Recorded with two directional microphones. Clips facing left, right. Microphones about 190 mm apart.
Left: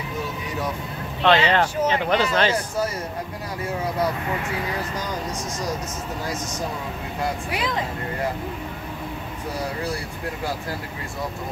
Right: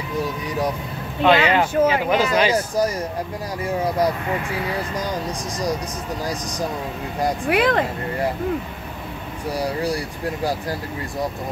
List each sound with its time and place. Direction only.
1.2 s speech: 10° right (ahead or behind)
7.4 s speech: 60° right (ahead or behind)